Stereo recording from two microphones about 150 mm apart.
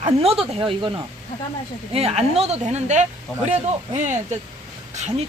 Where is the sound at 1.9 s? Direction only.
45° right (ahead or behind).